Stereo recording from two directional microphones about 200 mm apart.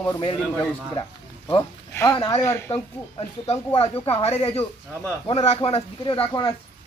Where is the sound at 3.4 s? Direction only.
30° left (ahead or behind).